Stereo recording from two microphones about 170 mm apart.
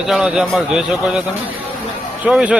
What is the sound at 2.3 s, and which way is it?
Speech, 5° right (ahead or behind).